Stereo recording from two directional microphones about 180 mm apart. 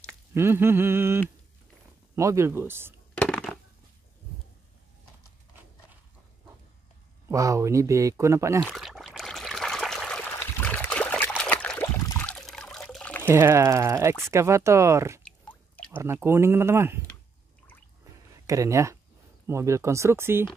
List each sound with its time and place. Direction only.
0.3 s speech: 15° right (ahead or behind)
3.2 s crushing: 5° left (ahead or behind)
7.2 s speech: 15° right (ahead or behind)
8.6 s trickle: centre (ahead or behind)
12.1 s water: 5° left (ahead or behind)
13.3 s speech: 15° right (ahead or behind)
18.0 s a sound: 15° right (ahead or behind)
19.4 s speech: 15° right (ahead or behind)